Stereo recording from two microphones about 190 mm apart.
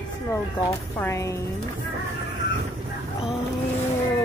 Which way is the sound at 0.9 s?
15° left (ahead or behind).